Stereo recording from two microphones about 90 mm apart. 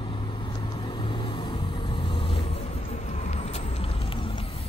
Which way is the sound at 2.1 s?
75° left (ahead or behind).